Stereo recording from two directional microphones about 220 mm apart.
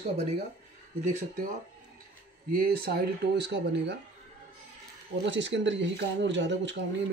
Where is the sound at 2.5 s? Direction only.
45° right (ahead or behind).